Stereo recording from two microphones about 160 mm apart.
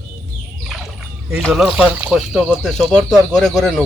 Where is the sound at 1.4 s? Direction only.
Centre (ahead or behind).